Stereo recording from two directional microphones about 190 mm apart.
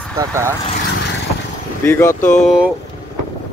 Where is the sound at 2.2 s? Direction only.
40° left (ahead or behind).